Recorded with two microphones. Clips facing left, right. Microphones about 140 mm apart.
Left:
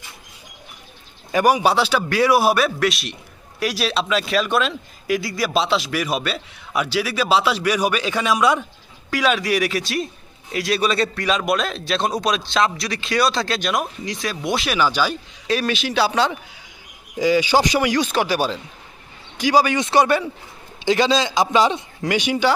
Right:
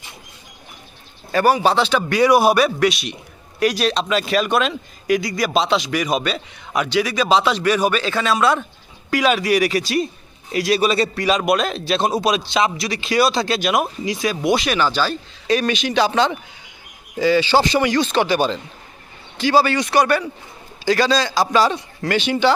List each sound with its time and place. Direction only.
1.3 s speech: 15° left (ahead or behind)
9.0 s speech: centre (ahead or behind)
15.4 s speech: centre (ahead or behind)